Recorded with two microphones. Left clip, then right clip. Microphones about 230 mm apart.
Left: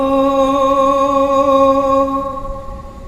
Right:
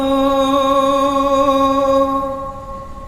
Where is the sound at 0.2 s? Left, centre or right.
Centre.